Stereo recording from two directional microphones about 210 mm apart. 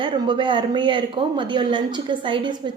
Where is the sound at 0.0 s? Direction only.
20° right (ahead or behind).